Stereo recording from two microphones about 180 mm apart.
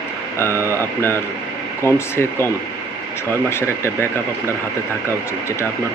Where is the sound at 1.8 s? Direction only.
15° left (ahead or behind).